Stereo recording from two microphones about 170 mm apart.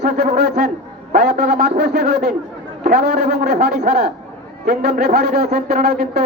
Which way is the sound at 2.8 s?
65° right (ahead or behind).